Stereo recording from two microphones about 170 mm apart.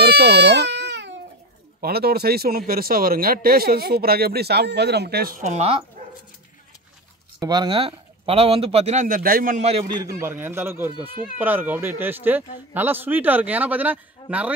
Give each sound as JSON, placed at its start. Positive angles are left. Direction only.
{"t": 0.0, "sound": "baby cry", "side_deg": -70}
{"t": 1.8, "sound": "speech", "side_deg": -65}
{"t": 5.4, "sound": "a man's voice", "side_deg": -40}
{"t": 7.3, "sound": "a man's voice", "side_deg": -25}
{"t": 9.8, "sound": "a man's voice", "side_deg": -25}
{"t": 10.2, "sound": "speech", "side_deg": -15}